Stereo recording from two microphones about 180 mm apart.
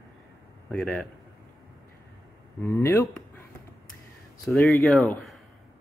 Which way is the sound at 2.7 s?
15° left (ahead or behind).